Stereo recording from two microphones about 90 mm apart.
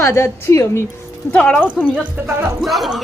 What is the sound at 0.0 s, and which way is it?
Speech, 30° left (ahead or behind).